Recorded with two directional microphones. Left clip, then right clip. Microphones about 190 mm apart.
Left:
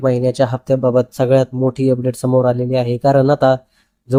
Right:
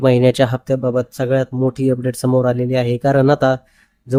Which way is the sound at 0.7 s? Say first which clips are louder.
Left 4 dB; 5° right (ahead or behind).